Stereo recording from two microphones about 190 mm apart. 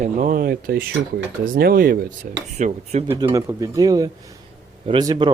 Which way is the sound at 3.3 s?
15° right (ahead or behind).